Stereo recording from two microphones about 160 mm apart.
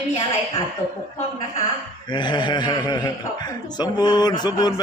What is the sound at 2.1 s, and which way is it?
Speech, 30° left (ahead or behind).